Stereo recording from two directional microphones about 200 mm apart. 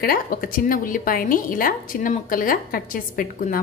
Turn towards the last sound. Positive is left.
turn(degrees=45)  # may be behind; listen again after turning